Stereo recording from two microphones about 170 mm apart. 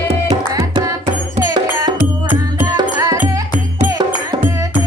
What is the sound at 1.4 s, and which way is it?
Music, 20° right (ahead or behind).